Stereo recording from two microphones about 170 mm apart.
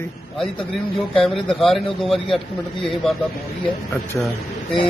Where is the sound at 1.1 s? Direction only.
Centre (ahead or behind).